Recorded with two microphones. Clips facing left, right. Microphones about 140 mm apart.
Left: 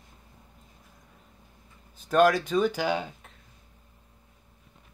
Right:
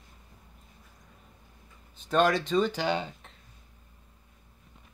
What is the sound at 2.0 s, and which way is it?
Speech, 5° left (ahead or behind).